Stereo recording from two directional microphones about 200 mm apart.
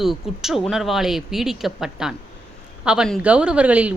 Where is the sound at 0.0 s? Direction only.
Centre (ahead or behind).